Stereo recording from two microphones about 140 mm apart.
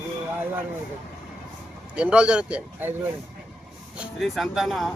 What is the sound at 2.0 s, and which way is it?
Speech, 10° right (ahead or behind).